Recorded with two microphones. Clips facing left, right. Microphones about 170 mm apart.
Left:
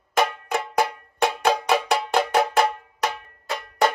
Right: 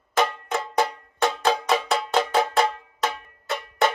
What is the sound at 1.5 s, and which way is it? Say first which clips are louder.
Cowbell: left 2 dB; centre (ahead or behind).